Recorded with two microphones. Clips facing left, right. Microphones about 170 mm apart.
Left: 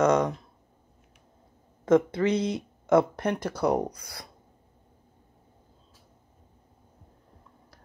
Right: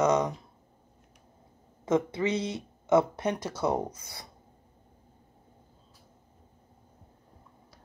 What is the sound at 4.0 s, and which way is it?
Speech, 25° right (ahead or behind).